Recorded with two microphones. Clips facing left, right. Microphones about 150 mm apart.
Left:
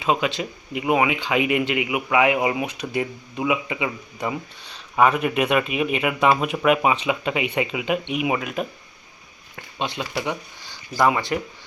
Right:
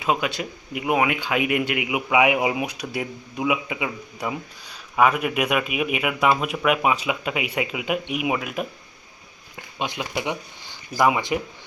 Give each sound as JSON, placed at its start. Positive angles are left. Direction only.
{"t": 0.0, "sound": "speech", "side_deg": -5}